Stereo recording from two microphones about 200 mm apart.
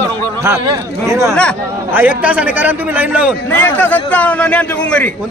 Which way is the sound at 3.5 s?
10° left (ahead or behind).